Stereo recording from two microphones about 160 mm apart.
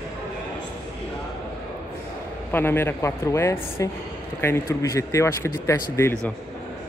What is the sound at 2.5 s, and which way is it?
A man's voice, 15° left (ahead or behind).